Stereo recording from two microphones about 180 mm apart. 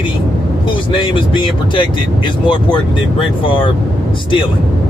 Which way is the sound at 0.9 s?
25° left (ahead or behind).